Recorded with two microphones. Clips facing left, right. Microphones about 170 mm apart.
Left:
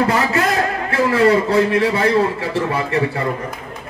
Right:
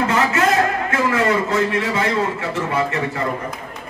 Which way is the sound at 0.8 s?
35° left (ahead or behind).